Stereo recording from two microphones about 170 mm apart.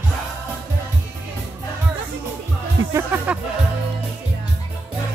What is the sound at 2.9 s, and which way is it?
Music, 10° right (ahead or behind).